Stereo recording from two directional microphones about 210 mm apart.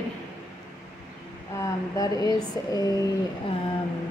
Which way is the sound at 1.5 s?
15° left (ahead or behind).